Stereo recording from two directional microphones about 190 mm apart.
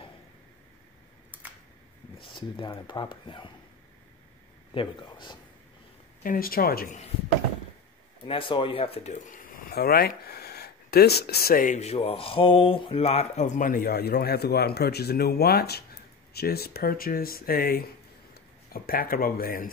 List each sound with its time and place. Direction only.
2.1 s speech: 25° left (ahead or behind)
4.7 s speech: 25° left (ahead or behind)
6.2 s speech: 50° left (ahead or behind)
8.3 s speech: 25° left (ahead or behind); by 19.7 s 50° left (ahead or behind)